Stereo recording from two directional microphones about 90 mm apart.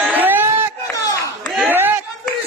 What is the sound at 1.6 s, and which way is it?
Clapping, 20° right (ahead or behind).